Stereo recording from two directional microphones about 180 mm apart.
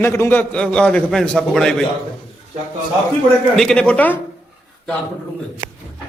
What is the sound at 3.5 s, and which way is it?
Speech, 5° left (ahead or behind).